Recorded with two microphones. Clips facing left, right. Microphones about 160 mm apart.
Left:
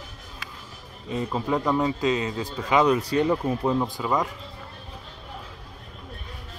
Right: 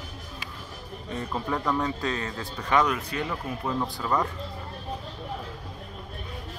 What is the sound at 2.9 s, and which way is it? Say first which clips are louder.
Speech: left 9 dB; 30° left (ahead or behind).